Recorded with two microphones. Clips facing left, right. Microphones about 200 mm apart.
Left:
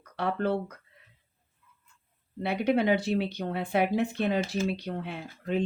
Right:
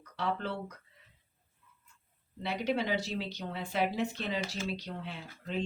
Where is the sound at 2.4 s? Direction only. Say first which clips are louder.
Left 7 dB; 55° left (ahead or behind).